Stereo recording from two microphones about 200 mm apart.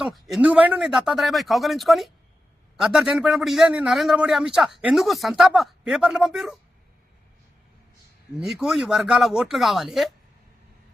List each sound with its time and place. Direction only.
0.0 s a man's voice: centre (ahead or behind)
8.4 s a man's voice: centre (ahead or behind)